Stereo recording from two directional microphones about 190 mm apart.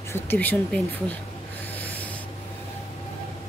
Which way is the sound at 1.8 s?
10° left (ahead or behind).